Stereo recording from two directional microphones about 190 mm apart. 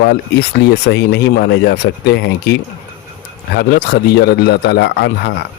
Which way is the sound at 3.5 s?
60° left (ahead or behind).